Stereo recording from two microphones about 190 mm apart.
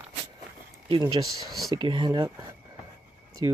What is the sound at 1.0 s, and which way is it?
Speech, 20° right (ahead or behind).